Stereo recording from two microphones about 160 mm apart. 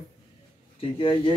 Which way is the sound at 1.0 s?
30° left (ahead or behind).